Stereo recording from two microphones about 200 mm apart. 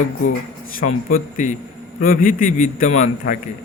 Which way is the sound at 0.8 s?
40° left (ahead or behind).